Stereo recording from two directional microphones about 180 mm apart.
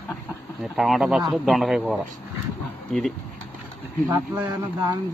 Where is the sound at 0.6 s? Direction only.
Centre (ahead or behind).